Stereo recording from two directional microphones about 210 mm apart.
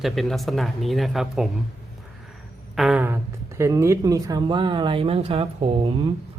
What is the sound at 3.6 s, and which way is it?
Speech, 15° right (ahead or behind).